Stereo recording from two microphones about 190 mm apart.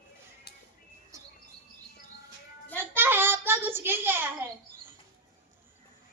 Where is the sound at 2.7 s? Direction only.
10° right (ahead or behind).